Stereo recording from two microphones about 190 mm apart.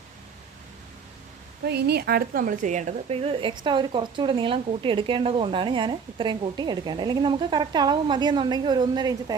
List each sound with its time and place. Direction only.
1.6 s a woman's voice: 60° right (ahead or behind); by 9.3 s 20° right (ahead or behind)